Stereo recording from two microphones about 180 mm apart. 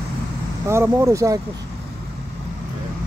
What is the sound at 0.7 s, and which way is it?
Speech, 15° right (ahead or behind).